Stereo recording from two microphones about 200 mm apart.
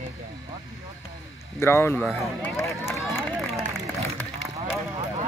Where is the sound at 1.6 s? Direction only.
10° left (ahead or behind).